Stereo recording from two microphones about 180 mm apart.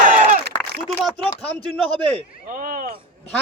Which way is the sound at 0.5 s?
25° left (ahead or behind).